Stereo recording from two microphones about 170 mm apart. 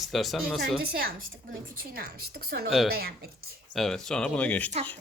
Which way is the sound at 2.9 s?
65° right (ahead or behind).